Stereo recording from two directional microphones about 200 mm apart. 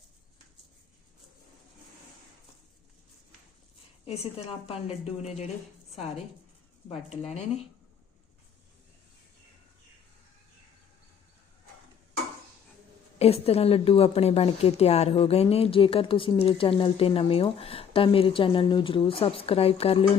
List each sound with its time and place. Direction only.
4.0 s a woman's voice: 30° left (ahead or behind)
7.2 s a woman's voice: 30° left (ahead or behind)
13.1 s a woman's voice: 30° left (ahead or behind)